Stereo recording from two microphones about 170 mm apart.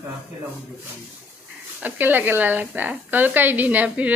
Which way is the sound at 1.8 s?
10° right (ahead or behind).